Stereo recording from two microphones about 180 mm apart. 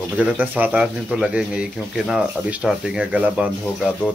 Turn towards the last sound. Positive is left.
turn(degrees=-5)  # may be behind; listen again after turning